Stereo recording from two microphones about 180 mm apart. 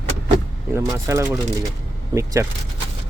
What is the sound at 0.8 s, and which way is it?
Speech, 15° right (ahead or behind).